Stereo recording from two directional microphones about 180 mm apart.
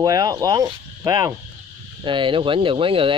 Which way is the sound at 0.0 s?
20° right (ahead or behind).